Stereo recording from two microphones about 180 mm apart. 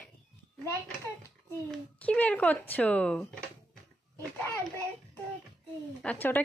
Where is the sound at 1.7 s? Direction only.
5° left (ahead or behind).